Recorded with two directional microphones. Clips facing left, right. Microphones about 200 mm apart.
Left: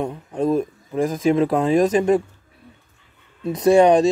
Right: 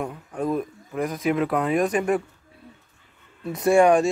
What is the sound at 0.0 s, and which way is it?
Speech, 25° left (ahead or behind).